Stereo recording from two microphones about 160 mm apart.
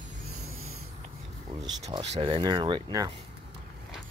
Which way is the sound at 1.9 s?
35° right (ahead or behind).